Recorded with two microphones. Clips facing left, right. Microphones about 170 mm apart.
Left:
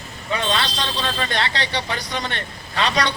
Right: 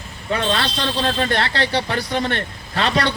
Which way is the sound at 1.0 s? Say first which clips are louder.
Right 4 dB; 50° right (ahead or behind).